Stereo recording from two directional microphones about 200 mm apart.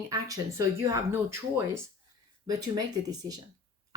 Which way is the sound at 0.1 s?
15° right (ahead or behind).